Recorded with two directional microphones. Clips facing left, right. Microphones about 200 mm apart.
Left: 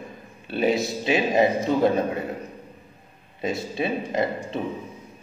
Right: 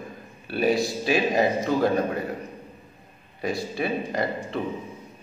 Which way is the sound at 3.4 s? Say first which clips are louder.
Left 1 dB; 20° left (ahead or behind).